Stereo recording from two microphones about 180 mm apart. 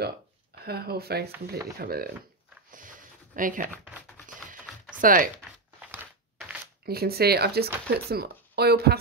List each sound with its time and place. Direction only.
0.7 s speech: 60° right (ahead or behind)
2.7 s a sound: 50° right (ahead or behind)
3.7 s speech: 10° right (ahead or behind)
4.9 s speech: 50° right (ahead or behind)
5.9 s a sound: 10° right (ahead or behind)
6.9 s speech: 60° right (ahead or behind)